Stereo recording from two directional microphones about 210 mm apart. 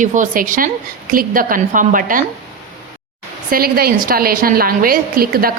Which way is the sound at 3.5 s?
45° right (ahead or behind).